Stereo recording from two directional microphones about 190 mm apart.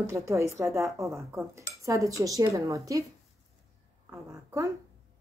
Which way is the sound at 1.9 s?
15° right (ahead or behind).